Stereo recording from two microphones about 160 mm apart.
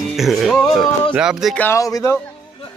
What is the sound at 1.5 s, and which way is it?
Speech, 15° left (ahead or behind).